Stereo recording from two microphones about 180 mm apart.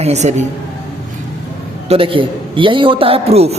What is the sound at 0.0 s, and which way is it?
Speech, 40° right (ahead or behind).